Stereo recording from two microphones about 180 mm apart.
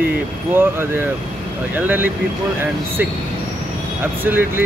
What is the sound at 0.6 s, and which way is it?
Speech, 15° right (ahead or behind).